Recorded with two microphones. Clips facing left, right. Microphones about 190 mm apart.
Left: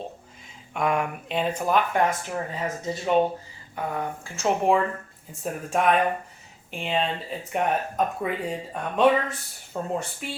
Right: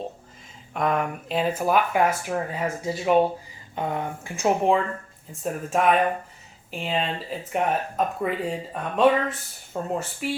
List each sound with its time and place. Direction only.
0.7 s speech: centre (ahead or behind)
3.8 s speech: 20° right (ahead or behind)
4.4 s speech: centre (ahead or behind)